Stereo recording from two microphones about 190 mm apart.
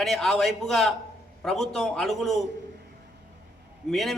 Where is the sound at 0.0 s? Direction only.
Centre (ahead or behind).